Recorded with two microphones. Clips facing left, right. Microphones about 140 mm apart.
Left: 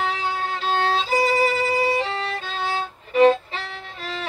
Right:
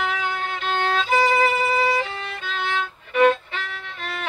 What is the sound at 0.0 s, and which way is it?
Violin, 35° left (ahead or behind).